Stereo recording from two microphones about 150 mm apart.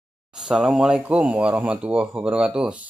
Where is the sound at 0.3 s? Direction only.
5° right (ahead or behind).